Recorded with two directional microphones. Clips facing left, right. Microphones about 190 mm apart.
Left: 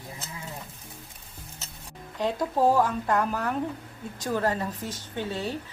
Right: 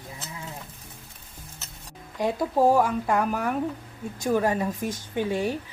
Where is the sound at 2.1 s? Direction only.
10° right (ahead or behind).